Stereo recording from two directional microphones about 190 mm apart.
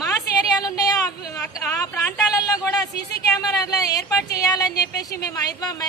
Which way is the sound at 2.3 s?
20° left (ahead or behind).